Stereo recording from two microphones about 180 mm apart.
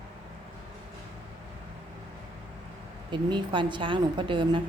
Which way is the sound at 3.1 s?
25° right (ahead or behind).